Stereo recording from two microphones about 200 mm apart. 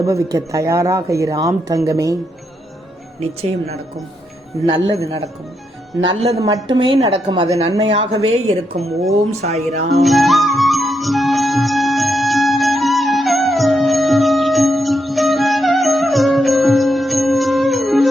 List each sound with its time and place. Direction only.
0.0 s speech: 15° right (ahead or behind)
3.2 s speech: 30° right (ahead or behind)
4.9 s speech: 15° right (ahead or behind)
6.1 s a woman's voice: 30° right (ahead or behind)
10.0 s music: centre (ahead or behind)